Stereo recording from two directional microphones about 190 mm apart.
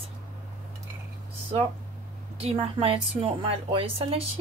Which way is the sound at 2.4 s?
30° right (ahead or behind).